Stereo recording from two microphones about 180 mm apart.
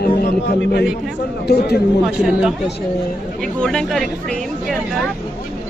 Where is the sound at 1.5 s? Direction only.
65° left (ahead or behind).